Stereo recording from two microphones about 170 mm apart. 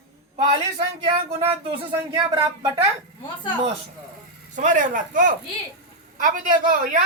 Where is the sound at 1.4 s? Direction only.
30° right (ahead or behind).